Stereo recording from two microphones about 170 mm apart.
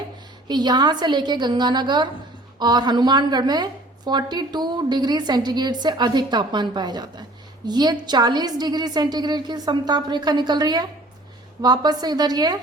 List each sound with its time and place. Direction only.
0.4 s a woman's voice: 25° right (ahead or behind)